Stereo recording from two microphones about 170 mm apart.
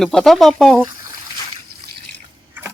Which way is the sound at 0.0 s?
Centre (ahead or behind).